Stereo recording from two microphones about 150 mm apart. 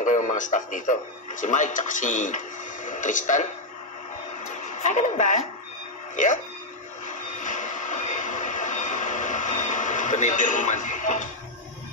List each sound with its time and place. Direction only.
0.0 s speech: 55° left (ahead or behind)
4.6 s a woman's voice: 55° left (ahead or behind)
7.1 s train: 55° left (ahead or behind)